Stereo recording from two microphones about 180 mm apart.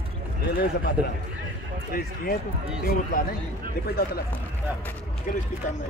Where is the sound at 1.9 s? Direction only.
55° left (ahead or behind).